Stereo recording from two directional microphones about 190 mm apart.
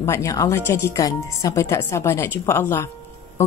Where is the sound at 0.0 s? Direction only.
15° left (ahead or behind).